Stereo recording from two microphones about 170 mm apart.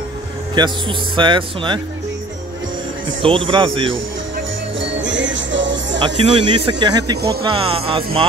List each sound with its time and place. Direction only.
0.6 s speech: 30° right (ahead or behind)
3.2 s speech: 30° right (ahead or behind)
5.0 s music: 90° right
6.0 s speech: 35° right (ahead or behind)